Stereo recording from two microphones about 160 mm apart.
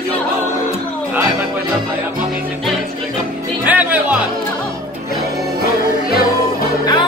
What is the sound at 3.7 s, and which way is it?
Music, 10° right (ahead or behind).